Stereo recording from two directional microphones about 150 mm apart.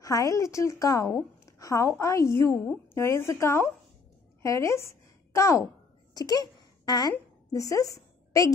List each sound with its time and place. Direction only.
0.0 s a woman's voice: 20° left (ahead or behind)